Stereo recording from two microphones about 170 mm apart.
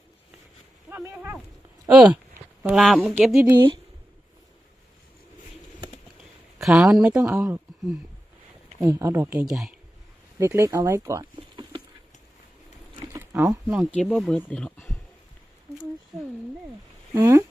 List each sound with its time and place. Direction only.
0.9 s a sound: 10° right (ahead or behind)
1.9 s a woman's voice: centre (ahead or behind)
6.6 s speech: centre (ahead or behind)
9.5 s a woman's voice: centre (ahead or behind)
10.4 s speech: 15° right (ahead or behind)
13.1 s a sound: 15° right (ahead or behind)
13.9 s a woman's voice: centre (ahead or behind)
17.2 s speech: 15° right (ahead or behind)